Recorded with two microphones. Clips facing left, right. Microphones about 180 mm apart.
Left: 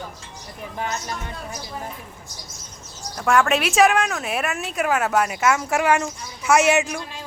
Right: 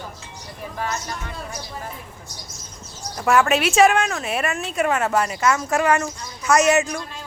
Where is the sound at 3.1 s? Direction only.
5° right (ahead or behind).